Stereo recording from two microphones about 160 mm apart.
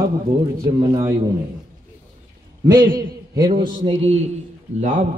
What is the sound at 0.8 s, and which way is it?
Speech, 25° right (ahead or behind).